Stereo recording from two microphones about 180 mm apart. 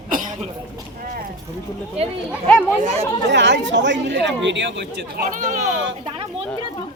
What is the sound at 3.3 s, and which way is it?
Speech, 85° right.